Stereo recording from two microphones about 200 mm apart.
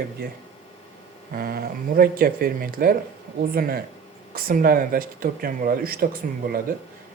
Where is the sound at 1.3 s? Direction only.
50° right (ahead or behind).